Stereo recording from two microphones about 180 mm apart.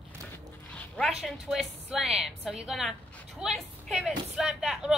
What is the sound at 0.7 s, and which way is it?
A woman's voice, 5° left (ahead or behind).